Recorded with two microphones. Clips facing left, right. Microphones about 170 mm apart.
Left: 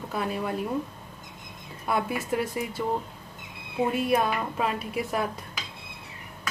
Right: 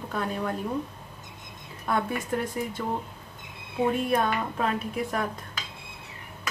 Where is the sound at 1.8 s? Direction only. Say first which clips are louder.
Even; 5° left (ahead or behind).